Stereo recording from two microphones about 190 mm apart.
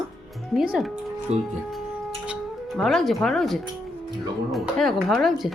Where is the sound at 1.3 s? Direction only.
35° right (ahead or behind).